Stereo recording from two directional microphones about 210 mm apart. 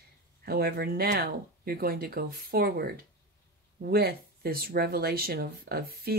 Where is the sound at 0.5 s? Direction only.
45° right (ahead or behind).